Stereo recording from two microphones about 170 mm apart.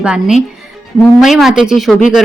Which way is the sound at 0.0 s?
5° right (ahead or behind).